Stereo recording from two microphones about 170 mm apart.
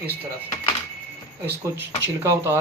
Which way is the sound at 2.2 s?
15° right (ahead or behind).